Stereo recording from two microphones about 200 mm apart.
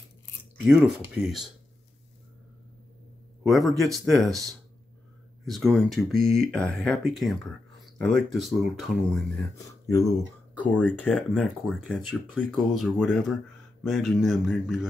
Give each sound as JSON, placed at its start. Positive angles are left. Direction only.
{"t": 0.7, "sound": "speech", "side_deg": -5}
{"t": 3.4, "sound": "speech", "side_deg": 0}
{"t": 5.4, "sound": "speech", "side_deg": 0}
{"t": 9.7, "sound": "speech", "side_deg": 15}